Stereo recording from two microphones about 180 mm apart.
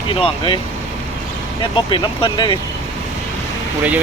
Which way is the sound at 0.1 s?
30° left (ahead or behind).